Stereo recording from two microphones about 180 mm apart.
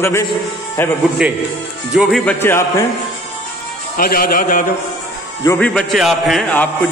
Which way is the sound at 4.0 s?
50° left (ahead or behind).